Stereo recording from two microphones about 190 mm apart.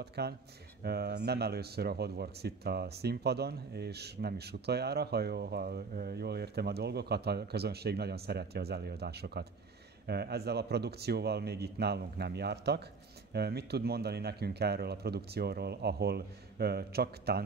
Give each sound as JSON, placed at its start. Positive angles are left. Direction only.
{"t": 0.0, "sound": "speech", "side_deg": -60}